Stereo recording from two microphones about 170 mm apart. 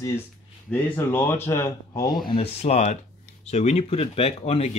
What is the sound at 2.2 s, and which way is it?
Speech, 35° left (ahead or behind).